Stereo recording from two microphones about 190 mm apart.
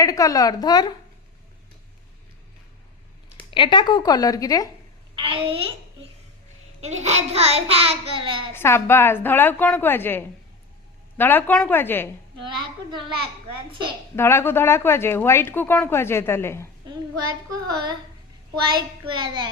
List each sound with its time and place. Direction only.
0.0 s speech: 15° left (ahead or behind)
3.5 s speech: 25° left (ahead or behind)
5.1 s a child's voice: 30° right (ahead or behind)
8.5 s a woman's voice: 10° left (ahead or behind)
14.2 s a woman's voice: 15° left (ahead or behind)
17.5 s a child's voice: 20° right (ahead or behind)